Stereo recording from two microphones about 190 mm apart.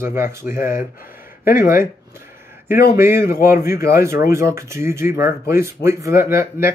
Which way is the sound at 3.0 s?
15° right (ahead or behind).